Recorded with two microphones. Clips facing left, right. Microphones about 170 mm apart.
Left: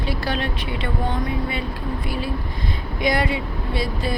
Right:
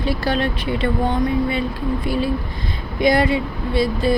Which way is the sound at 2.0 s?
30° right (ahead or behind).